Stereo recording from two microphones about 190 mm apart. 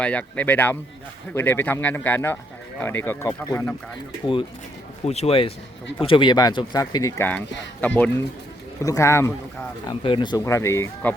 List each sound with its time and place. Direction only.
0.0 s speech: 5° left (ahead or behind)
5.0 s speech: 35° left (ahead or behind); by 9.3 s 15° left (ahead or behind)
9.8 s speech: 25° left (ahead or behind)